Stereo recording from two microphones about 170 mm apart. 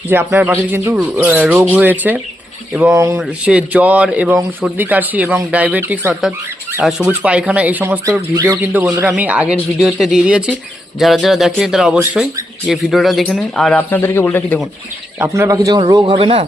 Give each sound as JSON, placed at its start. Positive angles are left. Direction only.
{"t": 0.1, "sound": "a man's voice", "side_deg": -10}
{"t": 3.2, "sound": "a man's voice", "side_deg": -5}
{"t": 15.2, "sound": "a man's voice", "side_deg": -20}
{"t": 16.1, "sound": "speech", "side_deg": -35}